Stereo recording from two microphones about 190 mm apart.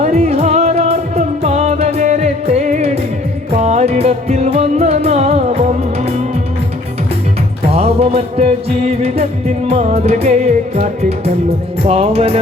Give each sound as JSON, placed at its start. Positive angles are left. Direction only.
{"t": 0.0, "sound": "music", "side_deg": -35}
{"t": 7.7, "sound": "music", "side_deg": -30}
{"t": 11.9, "sound": "music", "side_deg": -35}